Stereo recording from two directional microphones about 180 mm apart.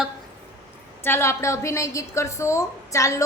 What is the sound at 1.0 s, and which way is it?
A woman's voice, 15° left (ahead or behind).